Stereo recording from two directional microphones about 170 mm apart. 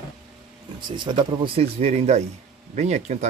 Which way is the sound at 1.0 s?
30° right (ahead or behind).